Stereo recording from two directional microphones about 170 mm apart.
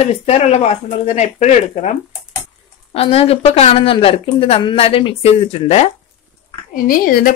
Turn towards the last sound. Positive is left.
turn(degrees=55)  # may be behind; listen again after turning